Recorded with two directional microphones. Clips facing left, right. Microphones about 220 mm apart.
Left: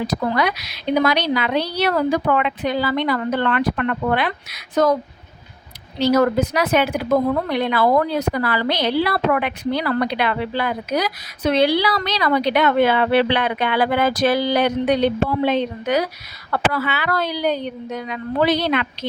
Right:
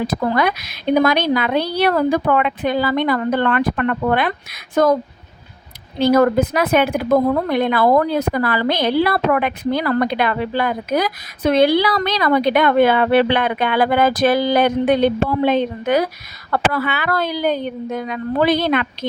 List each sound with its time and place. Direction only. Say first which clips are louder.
0.3 s a woman's voice: right 2 dB; 50° right (ahead or behind)
6.0 s a woman's voice: right 3 dB; 55° right (ahead or behind)